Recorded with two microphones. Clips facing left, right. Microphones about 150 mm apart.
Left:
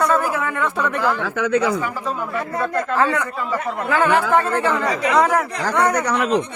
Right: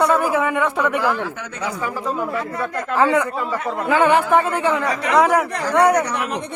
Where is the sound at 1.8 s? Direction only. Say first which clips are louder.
Right 1 dB; 15° right (ahead or behind).